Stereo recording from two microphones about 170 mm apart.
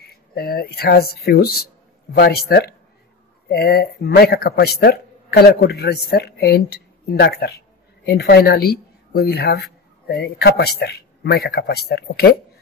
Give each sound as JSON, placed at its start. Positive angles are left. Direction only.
{"t": 0.0, "sound": "speech", "side_deg": 65}